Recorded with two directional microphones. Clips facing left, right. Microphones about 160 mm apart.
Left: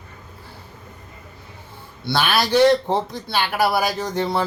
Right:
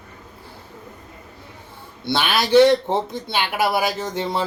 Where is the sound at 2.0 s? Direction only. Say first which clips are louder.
Left 1 dB; 20° right (ahead or behind).